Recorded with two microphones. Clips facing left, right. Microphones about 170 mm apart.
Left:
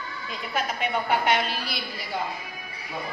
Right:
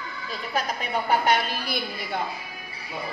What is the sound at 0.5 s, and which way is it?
A woman's voice, 40° right (ahead or behind).